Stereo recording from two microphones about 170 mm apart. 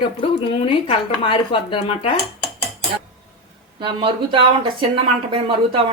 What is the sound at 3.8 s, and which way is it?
Speech, 30° right (ahead or behind).